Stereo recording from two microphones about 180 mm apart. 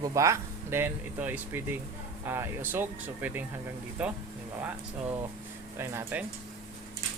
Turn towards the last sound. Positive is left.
turn(degrees=-15)  # may be behind; listen again after turning